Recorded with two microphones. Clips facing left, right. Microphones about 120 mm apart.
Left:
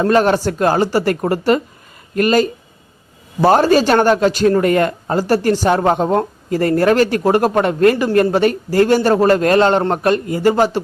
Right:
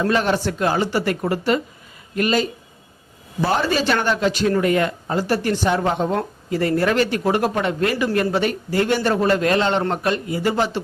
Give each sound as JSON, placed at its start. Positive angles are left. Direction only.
{"t": 0.0, "sound": "speech", "side_deg": 45}